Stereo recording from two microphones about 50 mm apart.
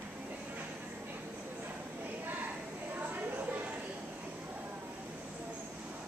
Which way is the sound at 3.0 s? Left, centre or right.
Right.